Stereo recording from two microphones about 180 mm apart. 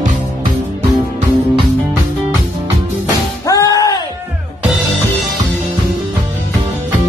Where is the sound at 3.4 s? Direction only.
20° left (ahead or behind).